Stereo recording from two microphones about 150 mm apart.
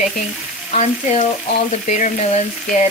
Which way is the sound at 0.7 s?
50° left (ahead or behind).